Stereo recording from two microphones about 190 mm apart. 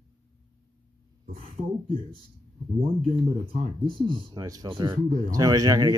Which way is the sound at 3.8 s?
25° right (ahead or behind).